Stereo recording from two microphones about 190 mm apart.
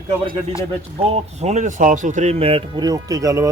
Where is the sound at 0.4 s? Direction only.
30° right (ahead or behind).